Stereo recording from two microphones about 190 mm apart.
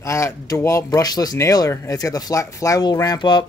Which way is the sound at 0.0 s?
15° left (ahead or behind).